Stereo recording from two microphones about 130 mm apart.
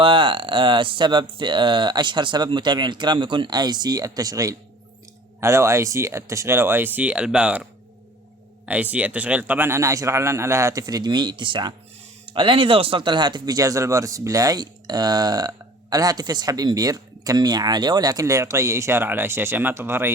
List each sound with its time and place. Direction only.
0.0 s speech: 40° right (ahead or behind); by 20.1 s 15° right (ahead or behind)